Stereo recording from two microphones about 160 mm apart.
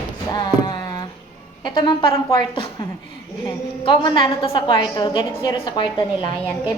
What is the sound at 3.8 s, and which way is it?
A woman's voice, 30° left (ahead or behind).